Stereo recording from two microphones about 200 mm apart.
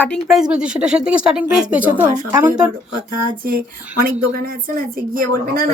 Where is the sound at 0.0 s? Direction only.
5° left (ahead or behind).